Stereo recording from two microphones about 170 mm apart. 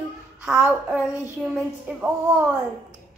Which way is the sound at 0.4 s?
5° right (ahead or behind).